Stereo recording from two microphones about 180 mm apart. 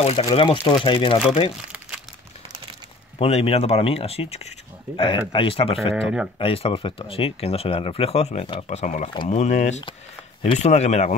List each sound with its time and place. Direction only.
0.0 s speech: 35° left (ahead or behind)
3.2 s speech: 35° left (ahead or behind)
9.1 s speech: 25° left (ahead or behind)
9.4 s speech: 40° left (ahead or behind)